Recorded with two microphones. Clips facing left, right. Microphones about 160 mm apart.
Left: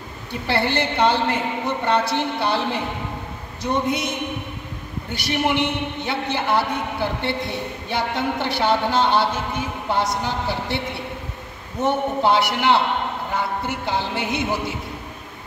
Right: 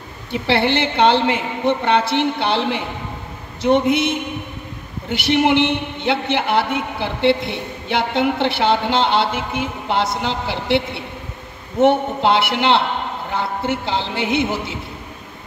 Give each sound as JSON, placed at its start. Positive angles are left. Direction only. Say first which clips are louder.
{"t": 0.3, "sound": "a man's voice", "louder": "right 4 dB", "side_deg": -70}
{"t": 5.2, "sound": "a man's voice", "louder": "right 6 dB", "side_deg": -70}
{"t": 11.8, "sound": "a man's voice", "louder": "right 5 dB", "side_deg": -70}